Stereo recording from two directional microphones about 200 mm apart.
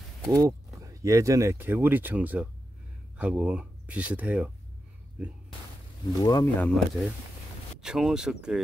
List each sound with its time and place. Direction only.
0.3 s speech: 15° right (ahead or behind)
6.2 s speech: 20° left (ahead or behind)
6.6 s speech: centre (ahead or behind)